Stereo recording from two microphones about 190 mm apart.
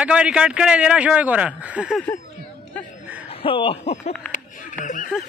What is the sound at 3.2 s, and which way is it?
Speech, 30° left (ahead or behind).